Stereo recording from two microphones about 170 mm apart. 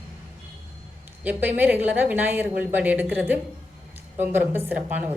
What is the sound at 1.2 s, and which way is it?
A woman's voice, 10° right (ahead or behind).